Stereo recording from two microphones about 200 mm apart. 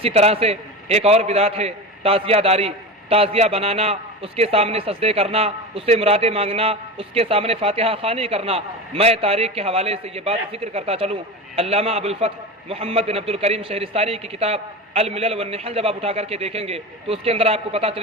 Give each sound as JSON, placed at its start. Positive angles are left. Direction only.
{"t": 0.0, "sound": "a man's voice", "side_deg": -30}